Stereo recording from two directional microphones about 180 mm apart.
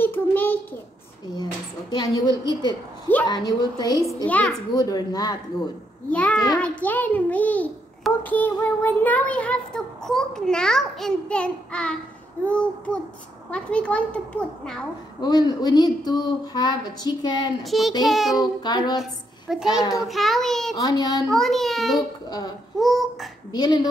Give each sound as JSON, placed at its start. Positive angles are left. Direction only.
{"t": 0.0, "sound": "child singing", "side_deg": 10}
{"t": 1.3, "sound": "a woman's voice", "side_deg": 25}
{"t": 4.3, "sound": "a child's voice", "side_deg": 10}
{"t": 4.7, "sound": "a woman's voice", "side_deg": 20}
{"t": 6.0, "sound": "a child's voice", "side_deg": 5}
{"t": 15.2, "sound": "a woman's voice", "side_deg": 20}
{"t": 17.6, "sound": "a child's voice", "side_deg": 0}
{"t": 18.4, "sound": "a woman's voice", "side_deg": 25}
{"t": 19.5, "sound": "a child's voice", "side_deg": 0}
{"t": 20.7, "sound": "a woman's voice", "side_deg": 20}
{"t": 21.3, "sound": "a child's voice", "side_deg": 0}
{"t": 23.5, "sound": "a woman's voice", "side_deg": 20}